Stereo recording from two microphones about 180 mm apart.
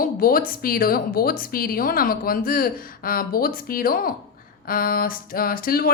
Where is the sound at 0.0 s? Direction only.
55° left (ahead or behind).